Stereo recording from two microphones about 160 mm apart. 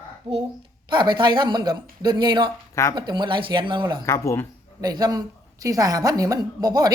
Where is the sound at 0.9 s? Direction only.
30° right (ahead or behind).